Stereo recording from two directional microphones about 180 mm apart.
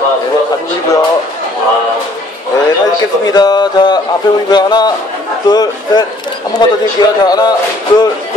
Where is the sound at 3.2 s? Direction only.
20° left (ahead or behind).